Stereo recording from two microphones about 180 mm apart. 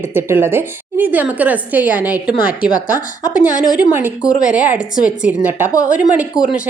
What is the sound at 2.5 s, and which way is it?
A woman's voice, 50° left (ahead or behind).